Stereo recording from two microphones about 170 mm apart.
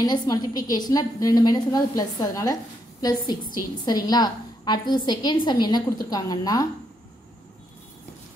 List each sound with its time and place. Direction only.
0.0 s a woman's voice: 25° left (ahead or behind)